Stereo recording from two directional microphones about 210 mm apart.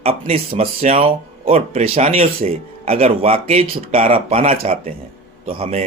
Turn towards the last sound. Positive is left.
turn(degrees=-25)  # may be behind; listen again after turning